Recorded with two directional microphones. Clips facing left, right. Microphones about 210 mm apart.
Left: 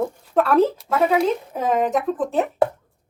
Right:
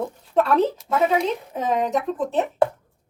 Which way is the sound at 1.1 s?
5° left (ahead or behind).